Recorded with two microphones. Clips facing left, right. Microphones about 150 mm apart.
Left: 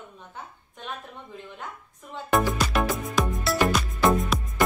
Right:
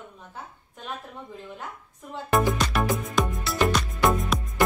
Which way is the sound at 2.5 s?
Centre (ahead or behind).